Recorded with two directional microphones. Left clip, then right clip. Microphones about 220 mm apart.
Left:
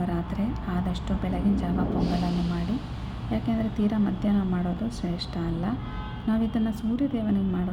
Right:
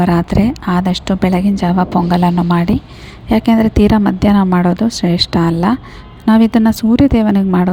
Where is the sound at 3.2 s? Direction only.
50° right (ahead or behind).